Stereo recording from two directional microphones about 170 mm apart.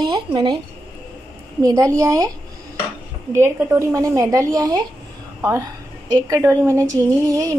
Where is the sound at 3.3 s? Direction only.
15° right (ahead or behind).